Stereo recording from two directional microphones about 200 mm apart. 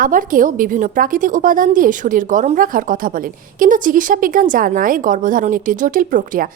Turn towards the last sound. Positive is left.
turn(degrees=-40)  # may be behind; listen again after turning